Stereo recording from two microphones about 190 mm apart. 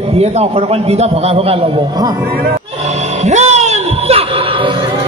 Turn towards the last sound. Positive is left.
turn(degrees=-35)  # may be behind; listen again after turning